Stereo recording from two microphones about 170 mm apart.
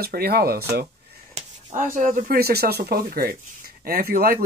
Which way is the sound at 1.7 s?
50° right (ahead or behind).